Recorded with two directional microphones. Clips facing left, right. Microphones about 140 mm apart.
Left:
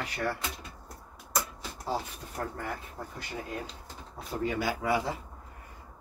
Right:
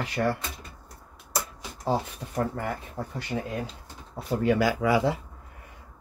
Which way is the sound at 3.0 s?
90° right.